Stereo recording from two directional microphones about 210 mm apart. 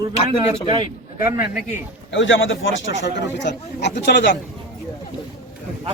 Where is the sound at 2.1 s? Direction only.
65° left (ahead or behind).